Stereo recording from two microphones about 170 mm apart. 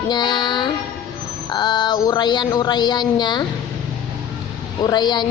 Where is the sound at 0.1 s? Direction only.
25° left (ahead or behind).